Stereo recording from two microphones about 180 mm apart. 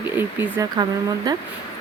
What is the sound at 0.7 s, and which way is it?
Speech, 20° right (ahead or behind).